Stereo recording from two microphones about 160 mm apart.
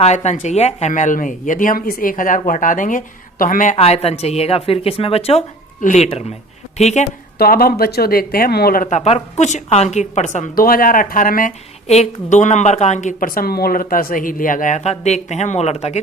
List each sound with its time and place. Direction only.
0.0 s speech: 45° left (ahead or behind)
3.8 s a woman's voice: 40° left (ahead or behind)
5.8 s speech: 50° left (ahead or behind)
7.3 s speech: 70° left (ahead or behind)
11.9 s speech: 45° left (ahead or behind)